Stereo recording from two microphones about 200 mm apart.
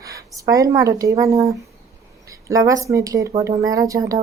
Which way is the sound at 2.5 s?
15° right (ahead or behind).